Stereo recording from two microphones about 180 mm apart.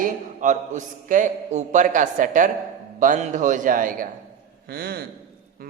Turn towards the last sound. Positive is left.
turn(degrees=-60)  # may be behind; listen again after turning